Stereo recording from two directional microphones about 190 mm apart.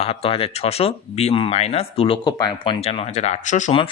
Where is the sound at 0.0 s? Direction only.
30° left (ahead or behind).